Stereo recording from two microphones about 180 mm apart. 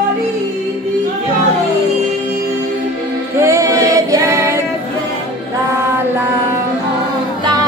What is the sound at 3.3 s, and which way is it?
Singing, 15° right (ahead or behind).